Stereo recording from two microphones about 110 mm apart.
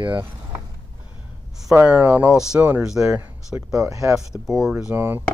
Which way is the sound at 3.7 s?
30° right (ahead or behind).